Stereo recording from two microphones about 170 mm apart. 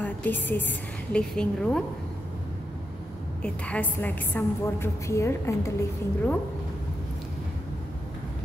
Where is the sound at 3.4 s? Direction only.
5° left (ahead or behind).